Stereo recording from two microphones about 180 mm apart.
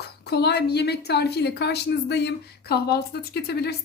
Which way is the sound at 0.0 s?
65° left (ahead or behind).